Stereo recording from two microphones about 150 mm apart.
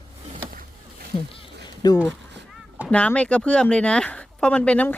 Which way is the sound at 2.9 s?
10° left (ahead or behind).